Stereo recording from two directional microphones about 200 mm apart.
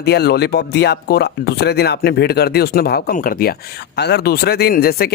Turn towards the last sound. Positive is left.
turn(degrees=50)  # may be behind; listen again after turning